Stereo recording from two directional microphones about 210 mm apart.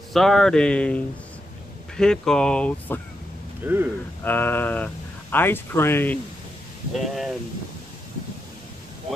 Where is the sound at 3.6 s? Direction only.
10° right (ahead or behind).